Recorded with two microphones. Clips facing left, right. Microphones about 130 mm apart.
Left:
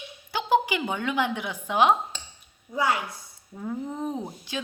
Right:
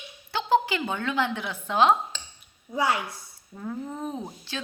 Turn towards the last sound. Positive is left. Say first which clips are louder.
# left 2 dB
turn(degrees=15)  # may be behind; listen again after turning